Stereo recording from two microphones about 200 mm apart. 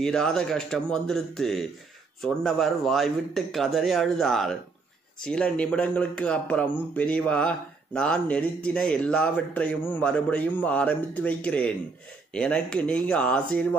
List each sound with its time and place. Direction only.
0.0 s speech: 5° left (ahead or behind)